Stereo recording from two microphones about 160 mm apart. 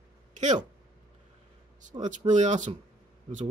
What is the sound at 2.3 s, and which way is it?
Speech, 50° right (ahead or behind).